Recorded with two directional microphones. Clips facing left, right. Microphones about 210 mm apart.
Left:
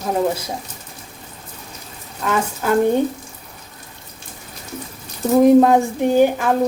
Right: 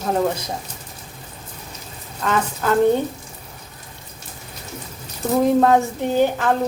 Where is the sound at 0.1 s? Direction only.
10° left (ahead or behind).